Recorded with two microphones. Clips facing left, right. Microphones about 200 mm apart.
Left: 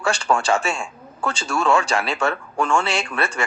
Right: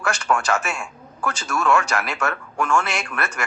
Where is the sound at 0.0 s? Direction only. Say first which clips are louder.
Left 2 dB; 30° left (ahead or behind).